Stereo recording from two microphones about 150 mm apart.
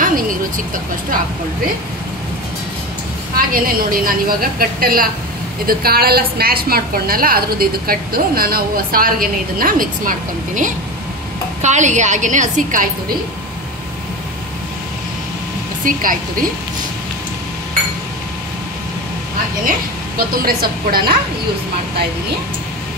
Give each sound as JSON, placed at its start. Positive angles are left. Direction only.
{"t": 0.0, "sound": "speech", "side_deg": -65}
{"t": 3.3, "sound": "a woman's voice", "side_deg": -75}
{"t": 5.7, "sound": "a woman's voice", "side_deg": -90}
{"t": 15.8, "sound": "a woman's voice", "side_deg": -65}
{"t": 20.2, "sound": "a woman's voice", "side_deg": -80}